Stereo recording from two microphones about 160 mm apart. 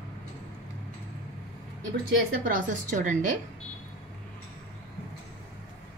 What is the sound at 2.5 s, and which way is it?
Speech, 55° right (ahead or behind).